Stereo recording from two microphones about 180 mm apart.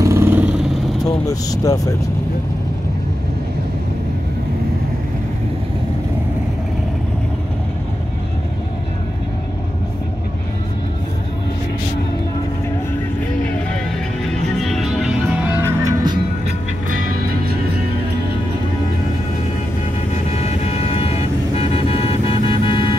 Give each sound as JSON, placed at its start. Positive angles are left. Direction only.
{"t": 0.0, "sound": "vehicle", "side_deg": -15}
{"t": 1.2, "sound": "speech", "side_deg": 20}
{"t": 14.6, "sound": "music", "side_deg": 0}
{"t": 15.6, "sound": "music", "side_deg": -15}
{"t": 20.2, "sound": "vehicle", "side_deg": 35}